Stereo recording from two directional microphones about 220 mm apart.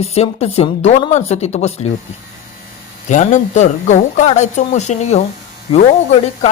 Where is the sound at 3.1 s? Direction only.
35° left (ahead or behind).